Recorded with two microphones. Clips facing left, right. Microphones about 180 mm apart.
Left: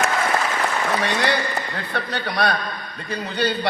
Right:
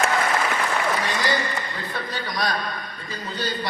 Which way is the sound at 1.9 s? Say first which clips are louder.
Left 5 dB; 65° left (ahead or behind).